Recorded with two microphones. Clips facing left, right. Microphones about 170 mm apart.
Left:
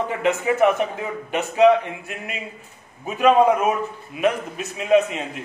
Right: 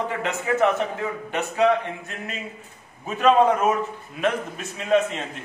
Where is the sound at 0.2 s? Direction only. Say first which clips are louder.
Left 4 dB; 15° left (ahead or behind).